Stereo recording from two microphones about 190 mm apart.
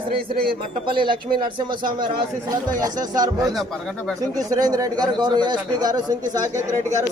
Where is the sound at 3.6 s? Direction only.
Centre (ahead or behind).